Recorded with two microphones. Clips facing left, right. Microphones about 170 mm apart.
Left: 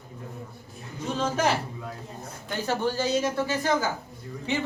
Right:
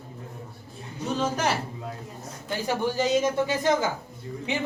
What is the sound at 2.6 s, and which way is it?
A woman's voice, 15° right (ahead or behind).